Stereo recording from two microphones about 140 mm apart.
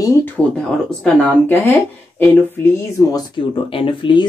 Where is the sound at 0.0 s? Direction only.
20° left (ahead or behind).